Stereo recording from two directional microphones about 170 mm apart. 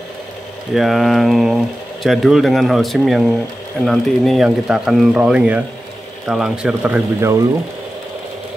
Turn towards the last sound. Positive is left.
turn(degrees=-5)  # may be behind; listen again after turning